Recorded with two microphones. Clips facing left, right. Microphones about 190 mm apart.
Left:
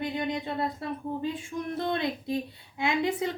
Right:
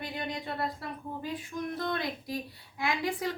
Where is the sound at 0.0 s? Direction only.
20° left (ahead or behind).